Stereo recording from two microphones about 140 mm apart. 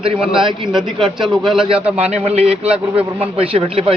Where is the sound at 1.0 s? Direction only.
Centre (ahead or behind).